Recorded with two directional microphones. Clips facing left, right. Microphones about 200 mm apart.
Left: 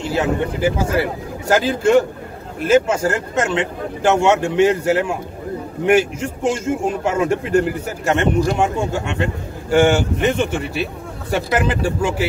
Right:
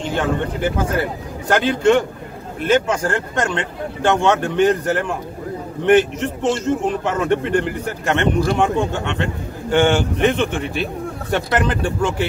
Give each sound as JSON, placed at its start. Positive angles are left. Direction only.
{"t": 0.0, "sound": "a man's voice", "side_deg": 5}